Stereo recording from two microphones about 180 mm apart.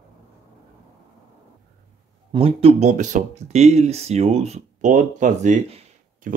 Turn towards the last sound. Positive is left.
turn(degrees=-40)  # may be behind; listen again after turning